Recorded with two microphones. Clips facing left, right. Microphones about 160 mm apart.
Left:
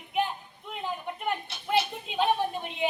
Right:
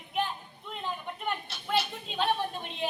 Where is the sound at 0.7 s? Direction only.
15° left (ahead or behind).